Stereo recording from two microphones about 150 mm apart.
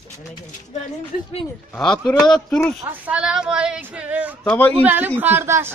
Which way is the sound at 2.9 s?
10° right (ahead or behind).